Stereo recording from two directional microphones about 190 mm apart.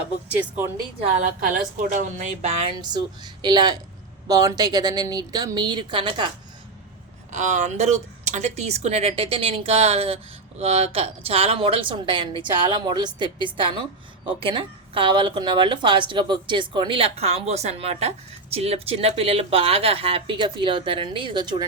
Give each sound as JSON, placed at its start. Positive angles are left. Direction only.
{"t": 0.3, "sound": "speech", "side_deg": -10}
{"t": 1.1, "sound": "speech", "side_deg": -45}
{"t": 2.7, "sound": "a woman's voice", "side_deg": -20}
{"t": 7.3, "sound": "a woman's voice", "side_deg": -40}